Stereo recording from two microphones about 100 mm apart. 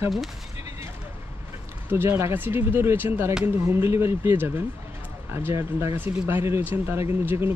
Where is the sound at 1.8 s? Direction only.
20° right (ahead or behind).